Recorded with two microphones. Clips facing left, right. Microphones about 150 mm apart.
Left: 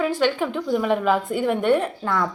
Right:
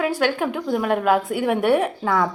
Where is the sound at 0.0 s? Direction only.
5° right (ahead or behind).